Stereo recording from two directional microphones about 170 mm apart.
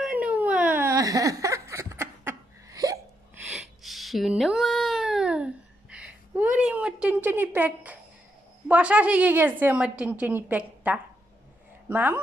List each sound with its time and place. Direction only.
0.0 s whimper: 10° right (ahead or behind)
3.5 s a sound: centre (ahead or behind)
8.6 s a woman's voice: 10° right (ahead or behind)